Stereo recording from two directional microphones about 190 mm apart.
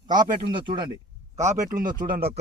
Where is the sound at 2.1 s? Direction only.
55° right (ahead or behind).